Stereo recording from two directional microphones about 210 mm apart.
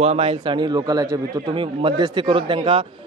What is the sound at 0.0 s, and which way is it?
A man's voice, 30° right (ahead or behind).